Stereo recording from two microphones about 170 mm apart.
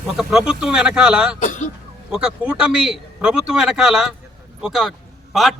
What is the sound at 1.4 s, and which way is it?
Speech, 50° left (ahead or behind).